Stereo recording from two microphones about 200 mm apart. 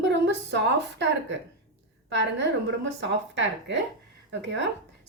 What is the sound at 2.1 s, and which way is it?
A woman's voice, 60° right (ahead or behind).